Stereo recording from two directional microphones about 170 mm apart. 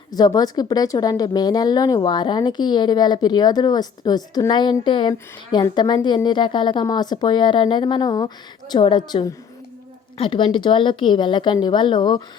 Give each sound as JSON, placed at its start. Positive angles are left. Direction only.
{"t": 0.1, "sound": "a woman's voice", "side_deg": 25}